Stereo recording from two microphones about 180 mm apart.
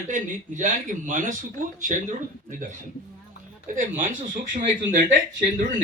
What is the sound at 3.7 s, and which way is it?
A man's voice, 45° right (ahead or behind).